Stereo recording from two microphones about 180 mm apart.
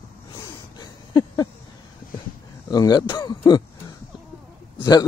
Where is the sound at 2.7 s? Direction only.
20° left (ahead or behind).